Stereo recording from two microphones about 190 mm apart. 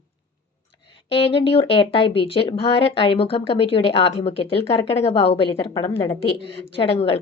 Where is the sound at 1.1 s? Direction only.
30° left (ahead or behind).